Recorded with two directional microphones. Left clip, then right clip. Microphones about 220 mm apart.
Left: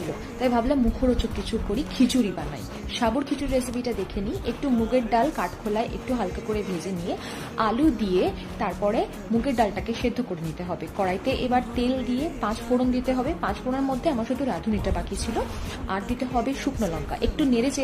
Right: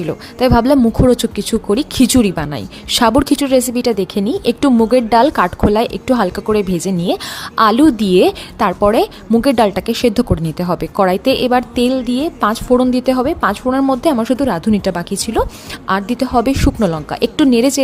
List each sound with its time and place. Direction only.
0.3 s a woman's voice: 40° right (ahead or behind)